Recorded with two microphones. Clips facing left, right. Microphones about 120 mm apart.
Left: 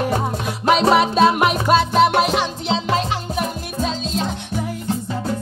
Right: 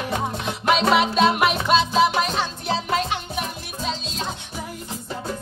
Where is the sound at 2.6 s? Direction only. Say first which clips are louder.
Left 3 dB; 25° left (ahead or behind); by 4.1 s 45° left (ahead or behind).